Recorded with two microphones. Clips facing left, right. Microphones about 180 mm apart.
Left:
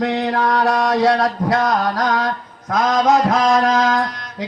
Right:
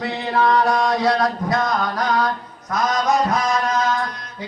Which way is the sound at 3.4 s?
90° left.